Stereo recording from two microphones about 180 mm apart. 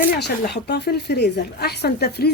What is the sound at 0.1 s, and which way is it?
Speech, 65° left (ahead or behind).